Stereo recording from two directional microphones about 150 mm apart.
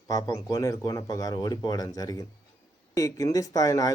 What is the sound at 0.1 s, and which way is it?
Speech, 25° left (ahead or behind).